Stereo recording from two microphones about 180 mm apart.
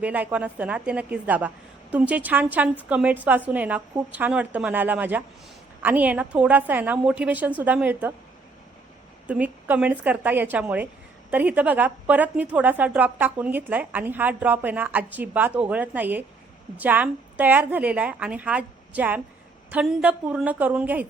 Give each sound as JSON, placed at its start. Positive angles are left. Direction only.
{"t": 0.0, "sound": "a woman's voice", "side_deg": -10}
{"t": 9.2, "sound": "a woman's voice", "side_deg": -10}